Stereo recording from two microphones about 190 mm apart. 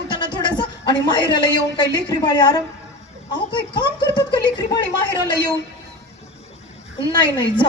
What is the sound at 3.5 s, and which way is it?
Speech, 25° left (ahead or behind).